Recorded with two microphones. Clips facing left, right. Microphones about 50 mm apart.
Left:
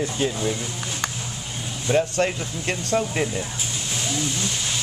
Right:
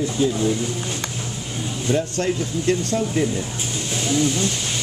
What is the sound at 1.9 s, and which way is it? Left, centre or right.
Speech, left.